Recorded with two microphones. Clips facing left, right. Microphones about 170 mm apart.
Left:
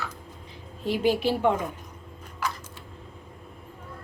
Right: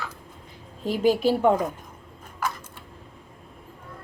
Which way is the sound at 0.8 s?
40° right (ahead or behind).